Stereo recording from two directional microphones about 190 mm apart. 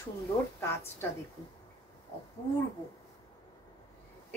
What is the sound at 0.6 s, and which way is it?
Speech, 15° left (ahead or behind).